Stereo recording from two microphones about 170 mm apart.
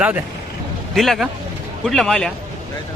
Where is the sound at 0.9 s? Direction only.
Centre (ahead or behind).